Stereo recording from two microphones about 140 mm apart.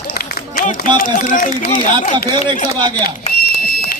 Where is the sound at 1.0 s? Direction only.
65° left (ahead or behind).